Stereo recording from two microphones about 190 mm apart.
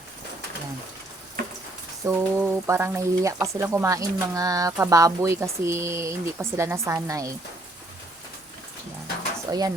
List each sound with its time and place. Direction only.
2.0 s speech: 15° right (ahead or behind)
9.5 s speech: 20° right (ahead or behind)